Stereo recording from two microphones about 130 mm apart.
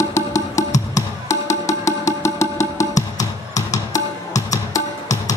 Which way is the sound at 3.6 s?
65° left (ahead or behind).